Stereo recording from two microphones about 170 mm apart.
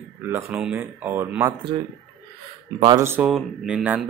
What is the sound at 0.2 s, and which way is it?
Speech, 15° right (ahead or behind).